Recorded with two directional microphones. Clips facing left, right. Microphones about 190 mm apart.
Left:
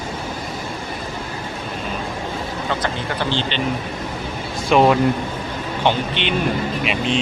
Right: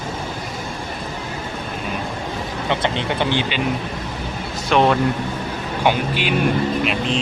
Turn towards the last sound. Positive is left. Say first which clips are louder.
# even
turn(degrees=0)  # may be behind; listen again after turning